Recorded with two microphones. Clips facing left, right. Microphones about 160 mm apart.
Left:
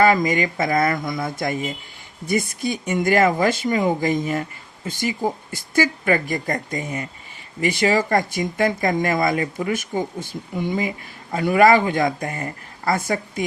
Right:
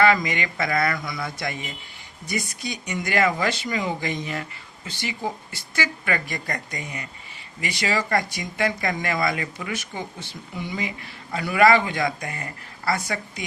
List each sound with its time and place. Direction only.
0.0 s speech: 45° left (ahead or behind)